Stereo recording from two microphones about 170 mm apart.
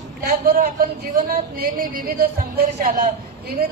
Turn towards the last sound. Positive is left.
turn(degrees=-60)  # may be behind; listen again after turning